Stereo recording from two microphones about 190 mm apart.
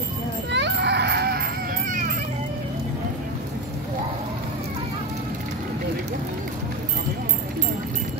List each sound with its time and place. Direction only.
0.5 s children playing: 65° right (ahead or behind)